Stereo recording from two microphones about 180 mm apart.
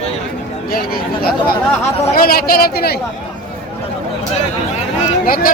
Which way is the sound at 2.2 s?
55° left (ahead or behind).